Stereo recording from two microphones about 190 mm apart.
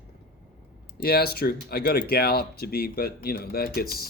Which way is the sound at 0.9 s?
55° left (ahead or behind).